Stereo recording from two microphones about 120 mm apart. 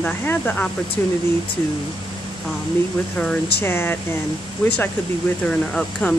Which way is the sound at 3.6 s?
20° left (ahead or behind).